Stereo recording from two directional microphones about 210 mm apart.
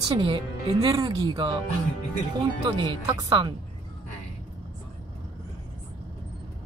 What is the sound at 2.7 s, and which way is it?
Speech, 20° right (ahead or behind).